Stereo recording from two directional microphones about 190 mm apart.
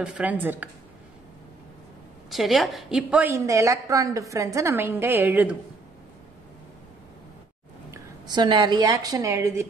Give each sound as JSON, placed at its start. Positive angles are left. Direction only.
{"t": 0.0, "sound": "a woman's voice", "side_deg": -5}
{"t": 2.3, "sound": "a woman's voice", "side_deg": 0}
{"t": 7.9, "sound": "a woman's voice", "side_deg": -20}